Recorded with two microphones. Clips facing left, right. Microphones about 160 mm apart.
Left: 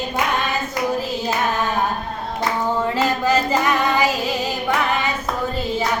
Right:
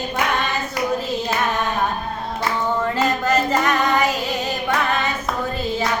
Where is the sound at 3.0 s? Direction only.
10° left (ahead or behind).